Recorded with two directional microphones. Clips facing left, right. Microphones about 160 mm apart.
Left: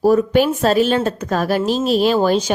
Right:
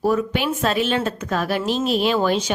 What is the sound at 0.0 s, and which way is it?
A woman's voice, 40° left (ahead or behind).